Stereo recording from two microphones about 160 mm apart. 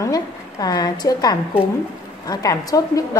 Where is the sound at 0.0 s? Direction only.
25° left (ahead or behind).